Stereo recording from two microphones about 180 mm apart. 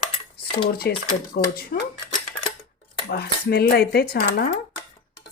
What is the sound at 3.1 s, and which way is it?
Speech, 60° left (ahead or behind).